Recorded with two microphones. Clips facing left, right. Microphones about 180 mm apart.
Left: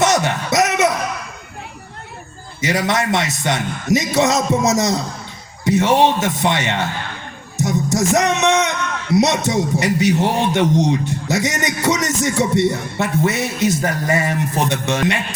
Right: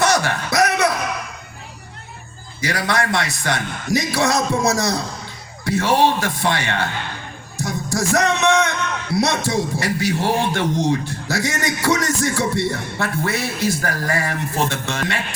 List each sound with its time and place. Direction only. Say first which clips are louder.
0.0 s a sound: left 2 dB; 20° left (ahead or behind)
2.6 s a man's voice: left 3 dB; 20° left (ahead or behind)
7.5 s music: left 5 dB; 20° left (ahead or behind)
9.1 s a man's voice: left 4 dB; 20° left (ahead or behind)